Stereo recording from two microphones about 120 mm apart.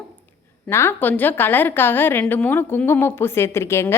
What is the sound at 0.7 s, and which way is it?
A woman's voice, 20° left (ahead or behind).